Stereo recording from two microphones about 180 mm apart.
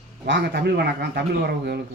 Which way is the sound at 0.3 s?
70° right (ahead or behind).